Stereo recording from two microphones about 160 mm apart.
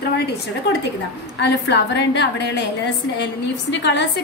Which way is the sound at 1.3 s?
90° left.